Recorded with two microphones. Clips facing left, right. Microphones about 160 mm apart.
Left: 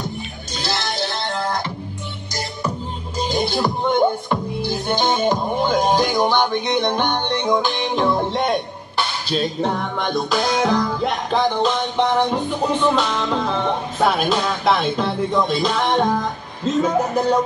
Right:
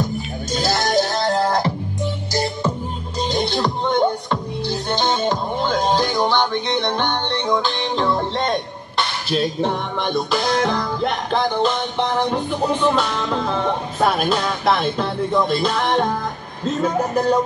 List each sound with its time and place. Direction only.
0.6 s music: 45° right (ahead or behind)
3.2 s music: 5° left (ahead or behind)
9.6 s music: centre (ahead or behind)